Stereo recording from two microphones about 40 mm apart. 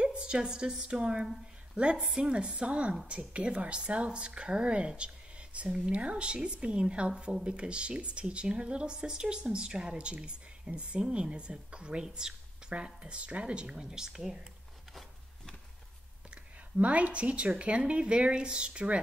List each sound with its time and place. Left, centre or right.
0.0 s a woman's voice: right
2.0 s speech: centre
2.6 s a woman's voice: right; by 14.4 s centre
16.7 s speech: right